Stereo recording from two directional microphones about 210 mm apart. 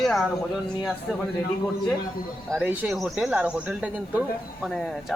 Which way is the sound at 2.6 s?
10° right (ahead or behind).